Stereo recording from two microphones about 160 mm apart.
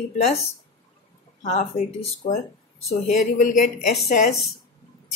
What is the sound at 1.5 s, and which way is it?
A woman's voice, 45° left (ahead or behind).